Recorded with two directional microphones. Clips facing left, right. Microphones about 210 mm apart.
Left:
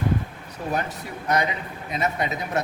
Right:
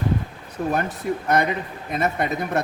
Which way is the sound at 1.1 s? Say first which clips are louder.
Right 4 dB; 50° right (ahead or behind).